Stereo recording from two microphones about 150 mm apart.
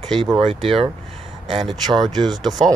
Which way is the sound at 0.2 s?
35° right (ahead or behind).